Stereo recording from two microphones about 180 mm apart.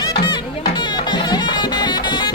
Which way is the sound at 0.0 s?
20° left (ahead or behind).